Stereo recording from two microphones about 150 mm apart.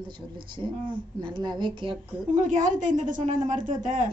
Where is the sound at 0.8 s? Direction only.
30° right (ahead or behind).